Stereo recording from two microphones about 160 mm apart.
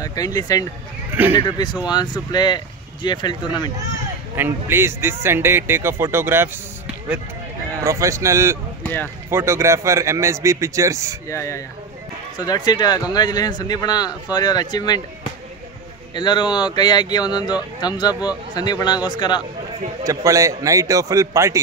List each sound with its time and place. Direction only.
0.0 s speech: 25° left (ahead or behind)
1.1 s speech: 10° right (ahead or behind)
1.9 s speech: 25° left (ahead or behind)
4.4 s a man's voice: 15° right (ahead or behind)
7.8 s a man's voice: 20° right (ahead or behind)
8.8 s speech: 10° left (ahead or behind)
9.3 s a man's voice: 15° right (ahead or behind)
11.2 s speech: 20° left (ahead or behind)
16.2 s speech: 30° left (ahead or behind)
20.0 s a man's voice: 20° right (ahead or behind)